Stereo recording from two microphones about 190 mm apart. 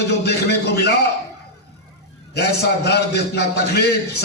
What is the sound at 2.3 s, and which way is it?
Music, 60° left (ahead or behind).